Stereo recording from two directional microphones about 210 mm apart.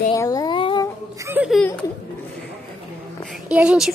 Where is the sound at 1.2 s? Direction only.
5° right (ahead or behind).